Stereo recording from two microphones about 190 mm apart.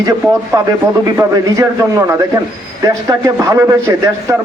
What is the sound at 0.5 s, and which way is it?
Speech, 20° right (ahead or behind).